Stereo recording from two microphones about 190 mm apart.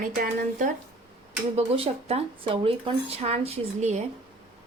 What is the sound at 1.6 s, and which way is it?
Speech, 30° right (ahead or behind).